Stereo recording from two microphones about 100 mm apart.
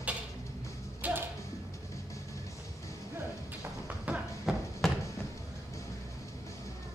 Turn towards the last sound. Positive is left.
turn(degrees=5)  # may be behind; listen again after turning